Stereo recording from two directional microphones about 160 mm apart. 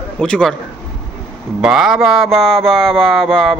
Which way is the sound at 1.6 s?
5° right (ahead or behind).